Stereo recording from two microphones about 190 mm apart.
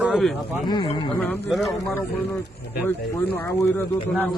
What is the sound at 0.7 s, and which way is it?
Speech, 25° left (ahead or behind).